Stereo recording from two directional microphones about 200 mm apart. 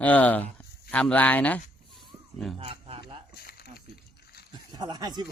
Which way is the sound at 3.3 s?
50° left (ahead or behind).